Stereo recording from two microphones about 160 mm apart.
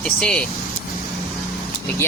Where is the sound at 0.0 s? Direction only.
5° left (ahead or behind).